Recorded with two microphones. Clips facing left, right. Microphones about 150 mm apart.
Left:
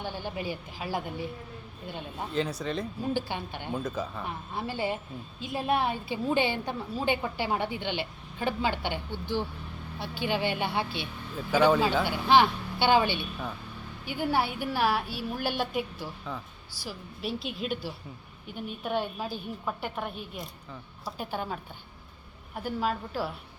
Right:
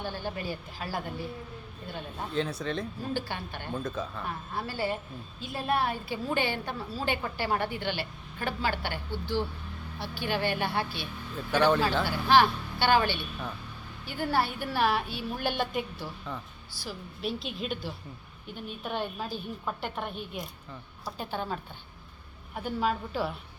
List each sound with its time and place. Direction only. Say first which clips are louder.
0.0 s a woman's voice: even; 15° left (ahead or behind)
2.3 s a woman's voice: left 1 dB; centre (ahead or behind)
3.1 s a woman's voice: left 3 dB; 15° left (ahead or behind)
3.8 s a woman's voice: left 1 dB; centre (ahead or behind)
4.2 s a woman's voice: even; 20° left (ahead or behind)
11.3 s a woman's voice: left 2 dB; 5° left (ahead or behind)
12.0 s a woman's voice: right 1 dB; 15° left (ahead or behind)
22.6 s a woman's voice: right 1 dB; centre (ahead or behind)